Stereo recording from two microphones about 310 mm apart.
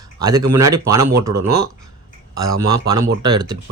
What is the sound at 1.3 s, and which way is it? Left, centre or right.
Speech, right.